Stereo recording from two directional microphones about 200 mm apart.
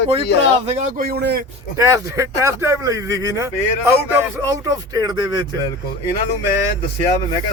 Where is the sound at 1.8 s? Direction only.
15° right (ahead or behind).